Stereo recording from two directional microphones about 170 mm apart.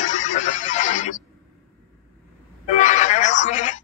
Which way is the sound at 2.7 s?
45° left (ahead or behind).